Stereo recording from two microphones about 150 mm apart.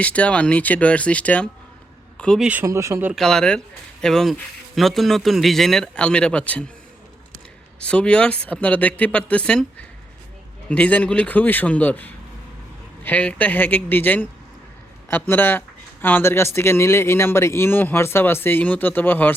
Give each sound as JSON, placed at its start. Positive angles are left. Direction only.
{"t": 0.0, "sound": "speech", "side_deg": 10}
{"t": 2.4, "sound": "speech", "side_deg": -10}
{"t": 3.1, "sound": "speech", "side_deg": 5}
{"t": 7.8, "sound": "speech", "side_deg": 5}